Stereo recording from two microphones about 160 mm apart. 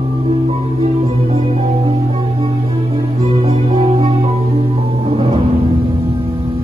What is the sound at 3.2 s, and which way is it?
Music, 35° right (ahead or behind).